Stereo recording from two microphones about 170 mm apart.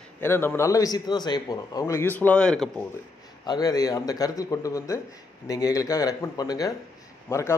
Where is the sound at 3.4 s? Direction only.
20° left (ahead or behind).